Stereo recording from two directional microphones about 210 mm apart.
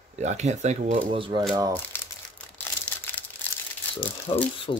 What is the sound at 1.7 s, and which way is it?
Crumpling, 10° left (ahead or behind).